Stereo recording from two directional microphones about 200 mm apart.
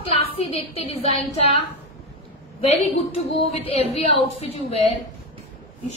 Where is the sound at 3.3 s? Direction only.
30° left (ahead or behind).